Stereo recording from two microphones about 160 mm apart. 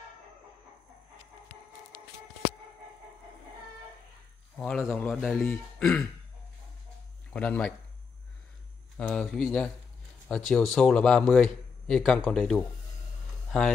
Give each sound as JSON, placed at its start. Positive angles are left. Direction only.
{"t": 4.6, "sound": "a man's voice", "side_deg": 0}
{"t": 7.3, "sound": "speech", "side_deg": 10}
{"t": 8.9, "sound": "a man's voice", "side_deg": 10}